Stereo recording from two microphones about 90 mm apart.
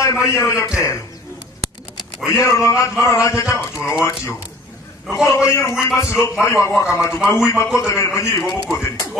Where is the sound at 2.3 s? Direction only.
35° left (ahead or behind).